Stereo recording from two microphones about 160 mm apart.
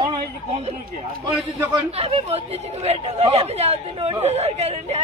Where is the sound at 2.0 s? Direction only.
40° right (ahead or behind).